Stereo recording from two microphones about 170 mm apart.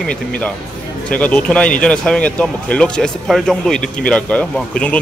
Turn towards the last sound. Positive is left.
turn(degrees=5)  # may be behind; listen again after turning